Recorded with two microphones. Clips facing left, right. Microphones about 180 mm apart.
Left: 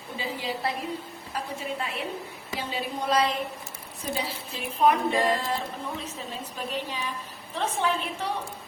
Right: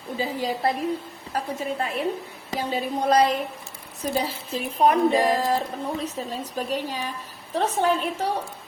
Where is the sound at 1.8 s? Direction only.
45° right (ahead or behind).